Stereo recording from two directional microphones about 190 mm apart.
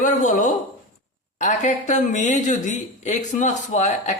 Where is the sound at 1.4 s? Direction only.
40° left (ahead or behind).